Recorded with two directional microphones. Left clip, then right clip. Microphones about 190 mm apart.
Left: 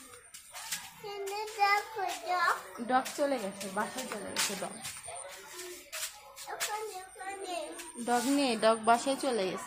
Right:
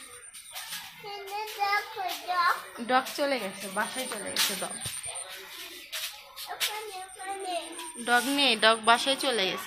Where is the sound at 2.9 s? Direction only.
25° right (ahead or behind).